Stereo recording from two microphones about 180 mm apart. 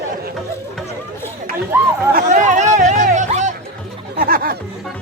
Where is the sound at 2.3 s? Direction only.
40° right (ahead or behind).